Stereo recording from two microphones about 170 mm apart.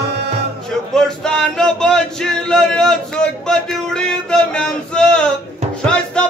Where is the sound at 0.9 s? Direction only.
5° left (ahead or behind).